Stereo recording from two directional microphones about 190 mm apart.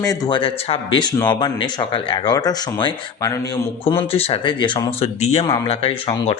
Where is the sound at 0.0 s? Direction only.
20° left (ahead or behind).